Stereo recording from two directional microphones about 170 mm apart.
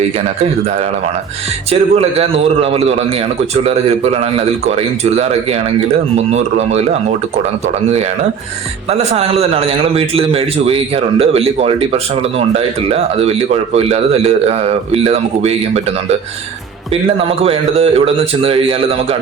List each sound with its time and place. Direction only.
1.7 s speech: 35° right (ahead or behind)
8.9 s speech: 35° right (ahead or behind)
16.9 s speech: 35° right (ahead or behind)